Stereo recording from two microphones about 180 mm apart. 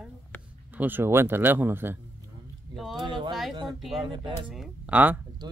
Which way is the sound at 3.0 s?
25° right (ahead or behind).